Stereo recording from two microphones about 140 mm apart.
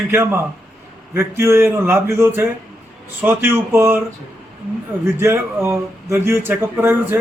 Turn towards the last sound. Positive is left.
turn(degrees=-15)  # may be behind; listen again after turning